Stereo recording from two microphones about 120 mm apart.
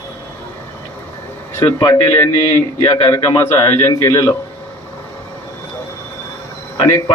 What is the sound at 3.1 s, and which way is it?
A man's voice, 25° left (ahead or behind).